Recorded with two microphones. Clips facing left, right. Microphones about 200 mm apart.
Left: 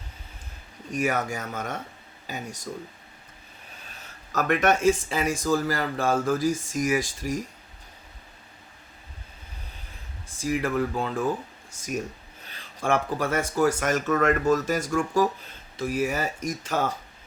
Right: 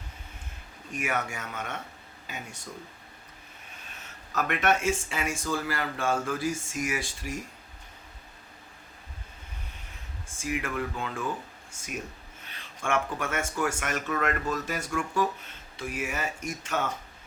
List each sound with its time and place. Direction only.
0.9 s speech: 40° left (ahead or behind)
4.4 s speech: 40° left (ahead or behind)
10.3 s speech: 35° left (ahead or behind)
12.5 s speech: 35° left (ahead or behind)